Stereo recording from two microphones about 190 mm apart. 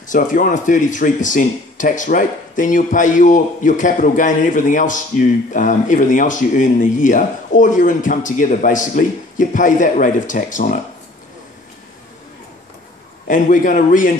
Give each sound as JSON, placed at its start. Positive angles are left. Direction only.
{"t": 0.0, "sound": "speech", "side_deg": 45}
{"t": 13.3, "sound": "speech", "side_deg": 45}